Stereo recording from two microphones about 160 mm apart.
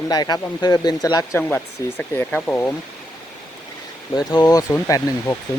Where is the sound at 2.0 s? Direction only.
10° left (ahead or behind).